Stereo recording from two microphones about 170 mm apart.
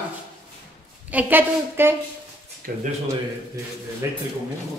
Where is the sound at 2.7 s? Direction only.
60° right (ahead or behind).